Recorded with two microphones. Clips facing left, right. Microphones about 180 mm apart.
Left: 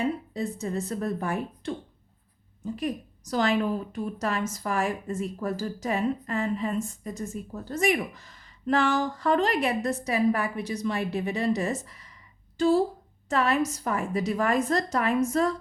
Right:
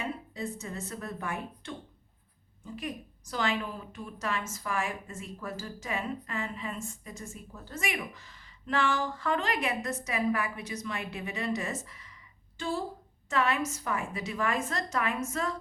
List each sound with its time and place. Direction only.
0.0 s a woman's voice: 35° left (ahead or behind)
2.7 s a woman's voice: 40° left (ahead or behind)